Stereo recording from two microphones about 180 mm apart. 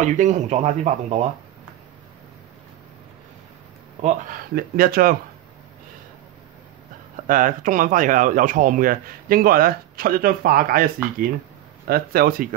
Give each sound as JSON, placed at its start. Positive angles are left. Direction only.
{"t": 0.0, "sound": "speech", "side_deg": -40}
{"t": 4.0, "sound": "speech", "side_deg": -45}
{"t": 7.2, "sound": "speech", "side_deg": -45}